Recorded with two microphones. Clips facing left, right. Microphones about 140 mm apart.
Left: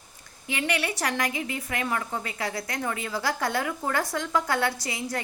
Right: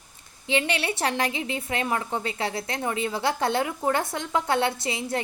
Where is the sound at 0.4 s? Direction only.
25° right (ahead or behind).